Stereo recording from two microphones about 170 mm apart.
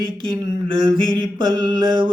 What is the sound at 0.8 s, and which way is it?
Mantra, 30° right (ahead or behind).